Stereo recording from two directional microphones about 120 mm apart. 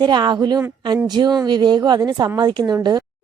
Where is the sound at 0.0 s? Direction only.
40° right (ahead or behind).